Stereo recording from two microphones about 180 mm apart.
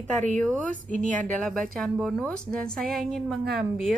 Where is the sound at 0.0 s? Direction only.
40° right (ahead or behind).